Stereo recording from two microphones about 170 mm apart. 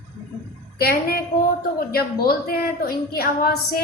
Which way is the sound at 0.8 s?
60° left (ahead or behind).